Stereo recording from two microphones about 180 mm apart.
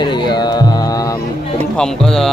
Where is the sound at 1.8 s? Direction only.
5° left (ahead or behind).